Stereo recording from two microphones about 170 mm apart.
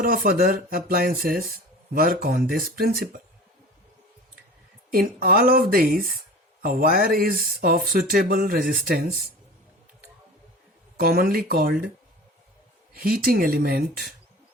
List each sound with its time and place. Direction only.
0.0 s speech: 60° right (ahead or behind)
4.9 s speech: 60° right (ahead or behind)
11.0 s speech: 60° right (ahead or behind)
12.9 s speech: 60° right (ahead or behind)